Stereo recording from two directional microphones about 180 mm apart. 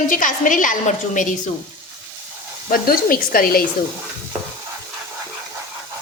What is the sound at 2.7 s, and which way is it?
Speech, 55° left (ahead or behind).